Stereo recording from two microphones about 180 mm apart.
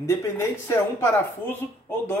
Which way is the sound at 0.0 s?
15° left (ahead or behind).